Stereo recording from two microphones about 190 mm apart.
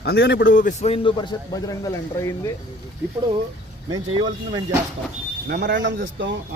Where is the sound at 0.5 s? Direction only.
40° left (ahead or behind); by 2.5 s 15° left (ahead or behind).